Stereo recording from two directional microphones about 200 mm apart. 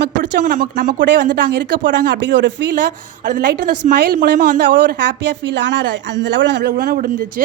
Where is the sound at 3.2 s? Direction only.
45° right (ahead or behind).